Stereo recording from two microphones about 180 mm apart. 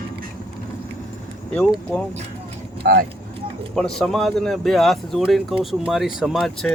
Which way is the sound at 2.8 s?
55° right (ahead or behind).